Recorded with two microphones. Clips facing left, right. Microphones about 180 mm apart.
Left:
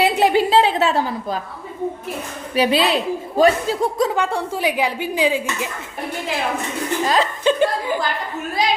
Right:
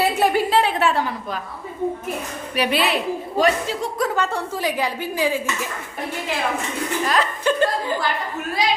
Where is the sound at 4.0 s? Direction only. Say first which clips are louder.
Left 3 dB; 15° left (ahead or behind).